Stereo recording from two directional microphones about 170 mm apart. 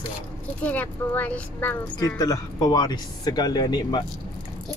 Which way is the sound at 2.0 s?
20° left (ahead or behind).